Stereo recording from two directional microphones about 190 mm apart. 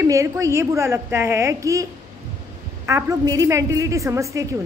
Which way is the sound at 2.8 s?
15° right (ahead or behind).